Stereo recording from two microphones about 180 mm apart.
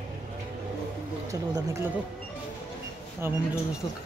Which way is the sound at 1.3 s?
15° right (ahead or behind).